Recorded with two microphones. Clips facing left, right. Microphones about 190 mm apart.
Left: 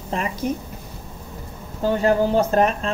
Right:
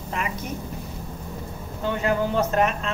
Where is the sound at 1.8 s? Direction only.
35° left (ahead or behind).